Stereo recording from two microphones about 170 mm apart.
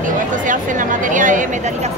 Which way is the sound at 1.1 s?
50° right (ahead or behind).